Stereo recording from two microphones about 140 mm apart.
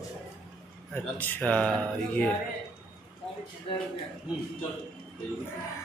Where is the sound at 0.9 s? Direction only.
15° left (ahead or behind).